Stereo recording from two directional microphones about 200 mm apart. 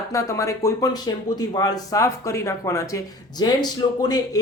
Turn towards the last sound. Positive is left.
turn(degrees=20)  # may be behind; listen again after turning